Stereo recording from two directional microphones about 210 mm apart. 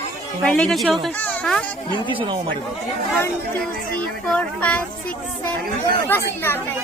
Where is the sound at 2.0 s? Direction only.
25° right (ahead or behind).